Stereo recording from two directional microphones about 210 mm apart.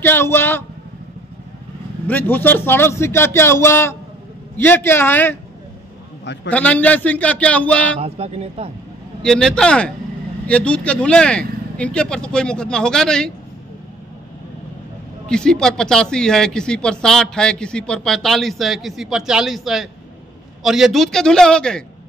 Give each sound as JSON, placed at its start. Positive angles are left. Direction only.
{"t": 0.0, "sound": "vehicle", "side_deg": 10}
{"t": 2.0, "sound": "a man's voice", "side_deg": 10}
{"t": 6.5, "sound": "a man's voice", "side_deg": 5}
{"t": 8.0, "sound": "speech", "side_deg": -30}
{"t": 9.2, "sound": "speech", "side_deg": 5}
{"t": 15.2, "sound": "speech", "side_deg": 5}